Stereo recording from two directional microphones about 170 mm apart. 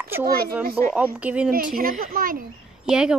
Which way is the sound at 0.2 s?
65° right (ahead or behind).